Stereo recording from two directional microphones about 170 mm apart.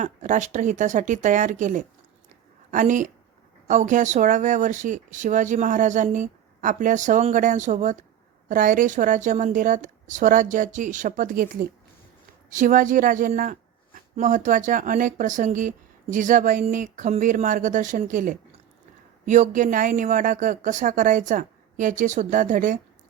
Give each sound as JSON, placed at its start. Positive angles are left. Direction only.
{"t": 0.0, "sound": "a woman's voice", "side_deg": -45}